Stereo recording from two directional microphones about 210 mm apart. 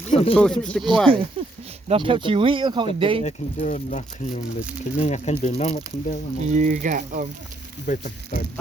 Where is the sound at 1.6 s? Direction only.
25° right (ahead or behind).